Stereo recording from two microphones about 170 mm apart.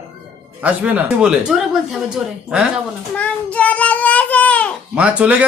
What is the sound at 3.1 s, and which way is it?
Child singing, 5° left (ahead or behind).